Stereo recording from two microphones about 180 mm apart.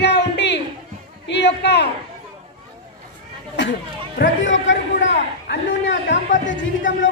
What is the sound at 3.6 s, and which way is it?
A man's voice, 80° left.